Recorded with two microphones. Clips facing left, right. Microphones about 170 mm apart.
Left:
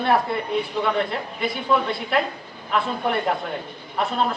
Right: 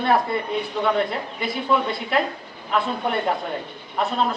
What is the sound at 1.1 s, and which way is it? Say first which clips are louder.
Speech: left 1 dB; centre (ahead or behind).